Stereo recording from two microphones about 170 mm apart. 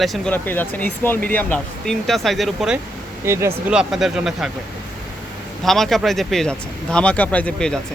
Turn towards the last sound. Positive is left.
turn(degrees=5)  # may be behind; listen again after turning